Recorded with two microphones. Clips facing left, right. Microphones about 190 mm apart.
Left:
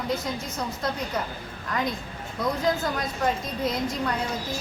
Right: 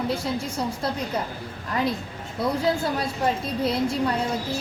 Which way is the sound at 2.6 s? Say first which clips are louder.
Right 2 dB; 30° right (ahead or behind).